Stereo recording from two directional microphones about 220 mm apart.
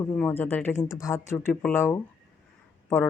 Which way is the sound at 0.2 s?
10° left (ahead or behind).